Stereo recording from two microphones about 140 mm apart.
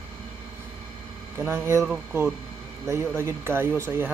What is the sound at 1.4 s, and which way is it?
Speech, 20° right (ahead or behind).